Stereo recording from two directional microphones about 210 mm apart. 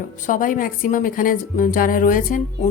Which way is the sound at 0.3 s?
40° left (ahead or behind).